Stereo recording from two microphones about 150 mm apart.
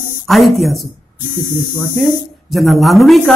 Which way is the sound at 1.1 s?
60° left (ahead or behind).